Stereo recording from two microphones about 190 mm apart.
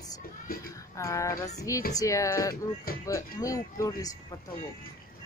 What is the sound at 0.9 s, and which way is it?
A child's voice, 15° left (ahead or behind).